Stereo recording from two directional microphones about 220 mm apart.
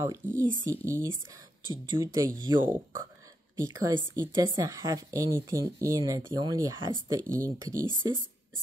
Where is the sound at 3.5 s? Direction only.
15° right (ahead or behind).